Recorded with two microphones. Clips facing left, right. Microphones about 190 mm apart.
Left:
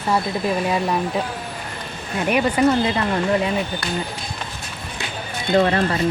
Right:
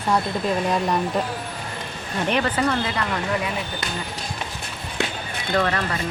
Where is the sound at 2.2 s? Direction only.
10° left (ahead or behind).